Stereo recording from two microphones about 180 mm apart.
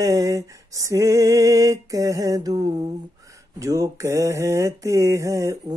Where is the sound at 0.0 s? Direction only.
20° right (ahead or behind).